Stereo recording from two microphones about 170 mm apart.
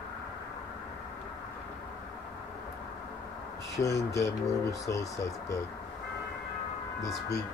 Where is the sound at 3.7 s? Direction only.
20° left (ahead or behind).